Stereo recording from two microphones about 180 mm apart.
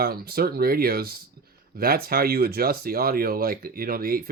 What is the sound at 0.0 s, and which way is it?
Speech, 60° right (ahead or behind).